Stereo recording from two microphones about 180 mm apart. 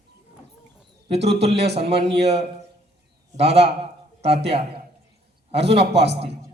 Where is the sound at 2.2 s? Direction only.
35° right (ahead or behind).